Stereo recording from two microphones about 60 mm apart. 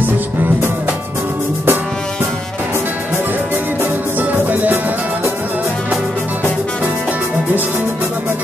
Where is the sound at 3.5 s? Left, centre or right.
Right.